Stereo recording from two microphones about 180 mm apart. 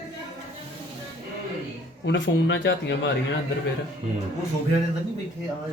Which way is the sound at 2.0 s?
85° left.